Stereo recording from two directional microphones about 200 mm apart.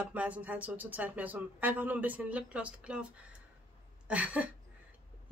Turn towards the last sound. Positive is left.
turn(degrees=-5)  # may be behind; listen again after turning